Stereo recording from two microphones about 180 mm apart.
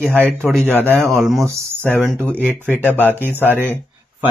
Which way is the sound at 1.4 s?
15° right (ahead or behind).